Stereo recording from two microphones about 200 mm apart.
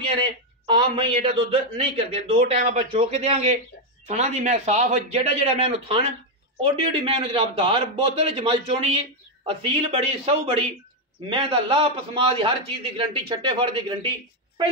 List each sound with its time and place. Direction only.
0.2 s a man's voice: 25° right (ahead or behind)